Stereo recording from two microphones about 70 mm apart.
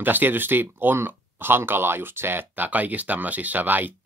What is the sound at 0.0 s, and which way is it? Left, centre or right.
Speech, right.